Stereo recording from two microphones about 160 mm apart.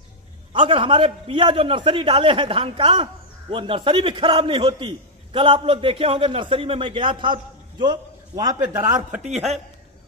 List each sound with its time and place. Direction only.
0.5 s a man's voice: 30° right (ahead or behind)
9.2 s speech: 45° right (ahead or behind)